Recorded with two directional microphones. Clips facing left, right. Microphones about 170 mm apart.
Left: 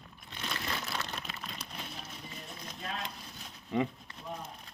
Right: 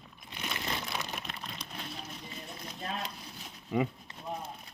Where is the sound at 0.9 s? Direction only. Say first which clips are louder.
Right 1 dB; 15° right (ahead or behind).